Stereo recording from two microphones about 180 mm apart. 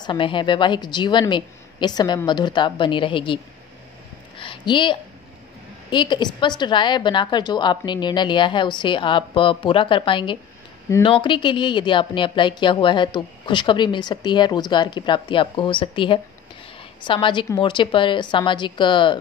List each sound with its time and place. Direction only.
0.0 s a woman's voice: 25° left (ahead or behind)
4.4 s a sound: 25° left (ahead or behind)
5.9 s a woman's voice: 25° left (ahead or behind)